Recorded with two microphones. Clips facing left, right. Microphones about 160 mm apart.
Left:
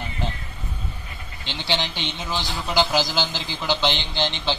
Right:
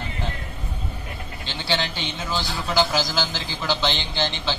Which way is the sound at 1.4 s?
20° left (ahead or behind).